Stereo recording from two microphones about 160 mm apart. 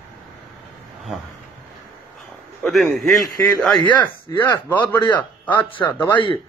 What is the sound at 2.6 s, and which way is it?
A man's voice, centre (ahead or behind).